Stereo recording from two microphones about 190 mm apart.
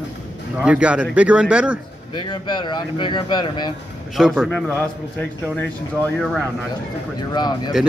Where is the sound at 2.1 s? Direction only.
25° left (ahead or behind).